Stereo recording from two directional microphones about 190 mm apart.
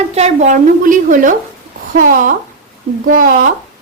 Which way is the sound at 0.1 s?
35° right (ahead or behind).